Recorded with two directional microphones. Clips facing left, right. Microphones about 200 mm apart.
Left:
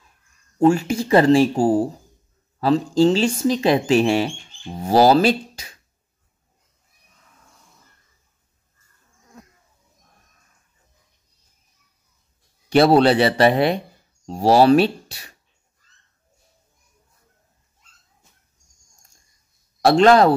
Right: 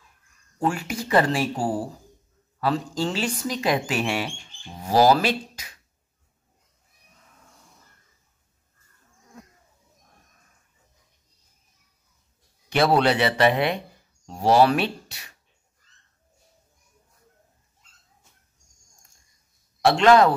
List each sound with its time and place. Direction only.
0.6 s speech: 25° left (ahead or behind)
12.6 s a man's voice: 35° left (ahead or behind)
19.8 s a man's voice: 35° left (ahead or behind)